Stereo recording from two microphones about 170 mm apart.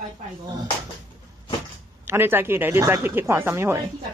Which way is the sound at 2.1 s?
15° right (ahead or behind).